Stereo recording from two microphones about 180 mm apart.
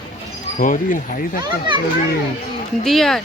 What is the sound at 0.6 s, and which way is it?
Speech, 50° left (ahead or behind).